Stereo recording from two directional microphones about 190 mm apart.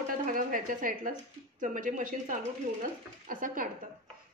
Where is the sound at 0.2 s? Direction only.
45° right (ahead or behind).